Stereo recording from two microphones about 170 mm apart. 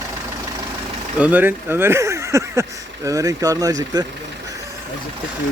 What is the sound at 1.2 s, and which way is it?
Speech, 10° right (ahead or behind).